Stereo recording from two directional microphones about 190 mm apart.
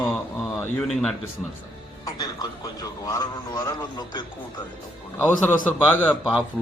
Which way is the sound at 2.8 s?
20° left (ahead or behind).